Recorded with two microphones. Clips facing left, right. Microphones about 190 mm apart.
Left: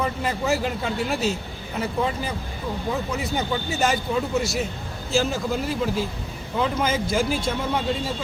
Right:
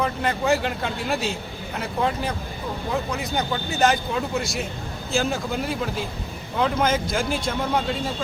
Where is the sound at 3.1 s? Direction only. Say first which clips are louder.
Left 1 dB; 5° left (ahead or behind).